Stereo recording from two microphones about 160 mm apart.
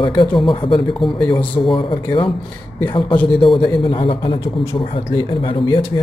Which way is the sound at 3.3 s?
30° left (ahead or behind).